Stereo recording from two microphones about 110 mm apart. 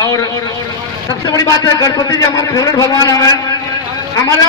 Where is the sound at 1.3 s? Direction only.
35° left (ahead or behind).